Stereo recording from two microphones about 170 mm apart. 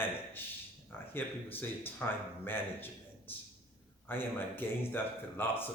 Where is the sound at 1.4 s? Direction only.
35° left (ahead or behind).